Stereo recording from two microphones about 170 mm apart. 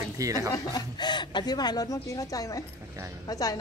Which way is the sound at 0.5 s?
25° left (ahead or behind).